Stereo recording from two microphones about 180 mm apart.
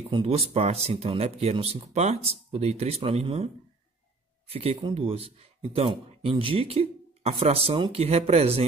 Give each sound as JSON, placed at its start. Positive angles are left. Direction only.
{"t": 0.1, "sound": "speech", "side_deg": -30}
{"t": 4.5, "sound": "speech", "side_deg": -35}